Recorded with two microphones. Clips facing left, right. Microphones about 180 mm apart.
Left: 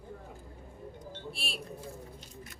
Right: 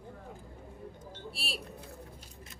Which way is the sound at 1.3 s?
35° right (ahead or behind).